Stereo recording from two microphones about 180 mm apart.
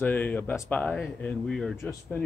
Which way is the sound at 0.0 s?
10° left (ahead or behind).